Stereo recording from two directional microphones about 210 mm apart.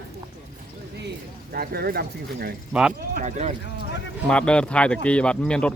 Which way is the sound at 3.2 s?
35° right (ahead or behind).